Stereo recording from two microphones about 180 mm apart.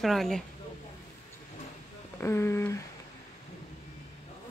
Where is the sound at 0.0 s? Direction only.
Centre (ahead or behind).